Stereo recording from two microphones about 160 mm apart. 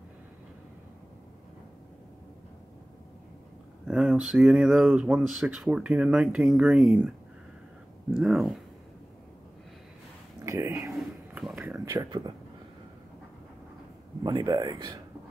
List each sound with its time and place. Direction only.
3.8 s speech: 5° right (ahead or behind)
10.4 s speech: 20° right (ahead or behind)
10.9 s a sound: centre (ahead or behind)
11.5 s speech: 15° right (ahead or behind)
14.2 s speech: 25° right (ahead or behind)